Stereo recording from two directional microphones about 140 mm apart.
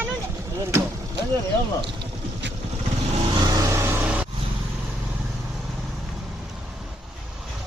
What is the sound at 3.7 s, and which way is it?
Vehicle, 15° right (ahead or behind).